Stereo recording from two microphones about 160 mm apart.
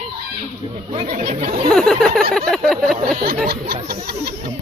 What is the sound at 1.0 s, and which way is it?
Speech, 50° right (ahead or behind).